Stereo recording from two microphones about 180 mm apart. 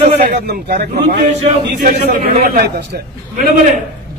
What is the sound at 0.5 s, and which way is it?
Speech, 60° right (ahead or behind).